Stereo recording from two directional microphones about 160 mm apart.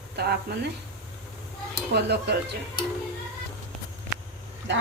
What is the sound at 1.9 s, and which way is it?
Speech, 90° right.